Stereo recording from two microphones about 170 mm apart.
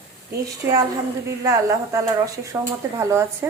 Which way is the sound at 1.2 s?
20° right (ahead or behind).